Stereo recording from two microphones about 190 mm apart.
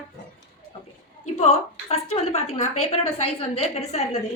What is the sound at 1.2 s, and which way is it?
A woman's voice, 35° left (ahead or behind).